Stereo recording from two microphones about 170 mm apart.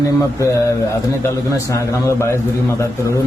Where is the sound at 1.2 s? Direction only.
20° left (ahead or behind).